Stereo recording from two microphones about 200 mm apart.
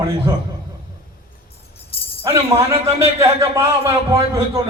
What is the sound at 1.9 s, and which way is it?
Music, 30° left (ahead or behind).